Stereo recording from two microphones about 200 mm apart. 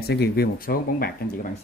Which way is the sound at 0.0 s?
55° left (ahead or behind).